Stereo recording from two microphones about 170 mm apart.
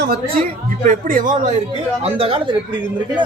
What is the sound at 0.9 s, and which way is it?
Speech, 50° right (ahead or behind).